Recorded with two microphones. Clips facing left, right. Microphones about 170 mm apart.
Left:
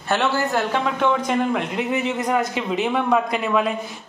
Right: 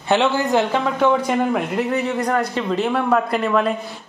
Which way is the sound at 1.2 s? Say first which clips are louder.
Right 2 dB; centre (ahead or behind).